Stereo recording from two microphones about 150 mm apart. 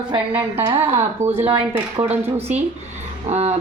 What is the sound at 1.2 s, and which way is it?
Speech, 50° right (ahead or behind).